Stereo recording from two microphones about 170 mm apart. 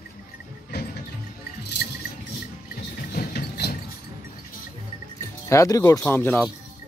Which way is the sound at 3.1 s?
65° left (ahead or behind).